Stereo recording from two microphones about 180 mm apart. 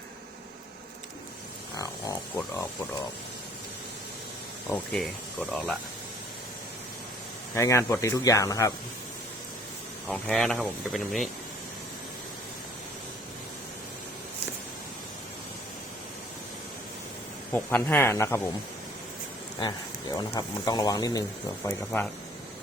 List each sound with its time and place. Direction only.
1.7 s a sound: 20° left (ahead or behind)
4.7 s speech: 10° left (ahead or behind)
7.5 s speech: 15° left (ahead or behind)
10.1 s speech: 5° left (ahead or behind)
17.5 s speech: 10° left (ahead or behind)
19.5 s speech: 25° left (ahead or behind)